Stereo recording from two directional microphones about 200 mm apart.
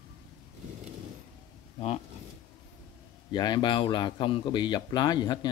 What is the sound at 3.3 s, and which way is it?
Speech, 20° left (ahead or behind).